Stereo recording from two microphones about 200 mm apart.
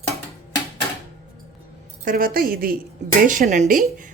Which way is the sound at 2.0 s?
45° right (ahead or behind).